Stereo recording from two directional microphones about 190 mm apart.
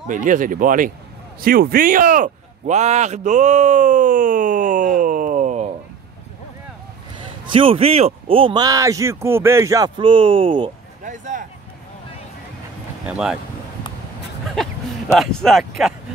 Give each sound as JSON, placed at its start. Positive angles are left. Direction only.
{"t": 0.1, "sound": "speech", "side_deg": -45}
{"t": 7.5, "sound": "speech", "side_deg": -30}
{"t": 11.1, "sound": "a sound", "side_deg": -40}
{"t": 13.0, "sound": "speech", "side_deg": -5}
{"t": 14.6, "sound": "a sound", "side_deg": 5}
{"t": 15.1, "sound": "speech", "side_deg": 0}